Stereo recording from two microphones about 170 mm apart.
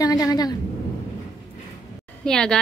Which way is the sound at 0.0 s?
20° left (ahead or behind).